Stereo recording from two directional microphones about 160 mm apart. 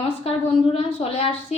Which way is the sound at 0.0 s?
35° left (ahead or behind).